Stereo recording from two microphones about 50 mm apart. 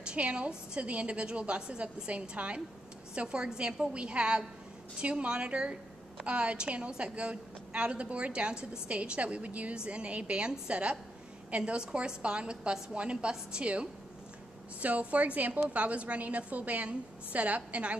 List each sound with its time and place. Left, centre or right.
0.0 s a woman's voice: right